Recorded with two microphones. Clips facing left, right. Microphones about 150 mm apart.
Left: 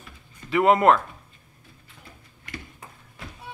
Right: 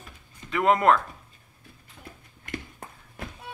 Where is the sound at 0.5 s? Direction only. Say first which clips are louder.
Left 3 dB; 5° left (ahead or behind).